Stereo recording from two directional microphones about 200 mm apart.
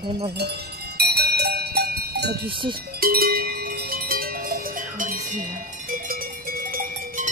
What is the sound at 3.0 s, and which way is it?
Cowbell, 45° right (ahead or behind).